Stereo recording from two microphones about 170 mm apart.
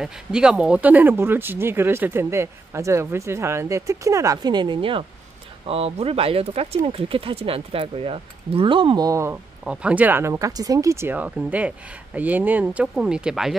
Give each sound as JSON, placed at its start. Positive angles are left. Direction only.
{"t": 0.0, "sound": "speech", "side_deg": -5}